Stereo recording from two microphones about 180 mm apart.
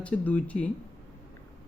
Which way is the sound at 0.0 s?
10° left (ahead or behind).